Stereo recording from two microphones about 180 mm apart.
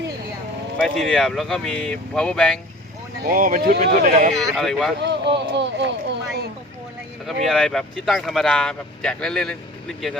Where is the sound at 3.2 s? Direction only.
50° right (ahead or behind).